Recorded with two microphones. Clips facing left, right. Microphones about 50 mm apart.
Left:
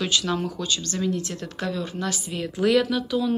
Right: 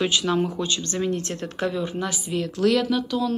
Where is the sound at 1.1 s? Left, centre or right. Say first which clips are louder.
Left 1 dB; right.